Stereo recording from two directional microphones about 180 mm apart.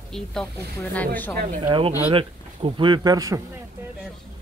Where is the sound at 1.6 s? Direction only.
25° right (ahead or behind).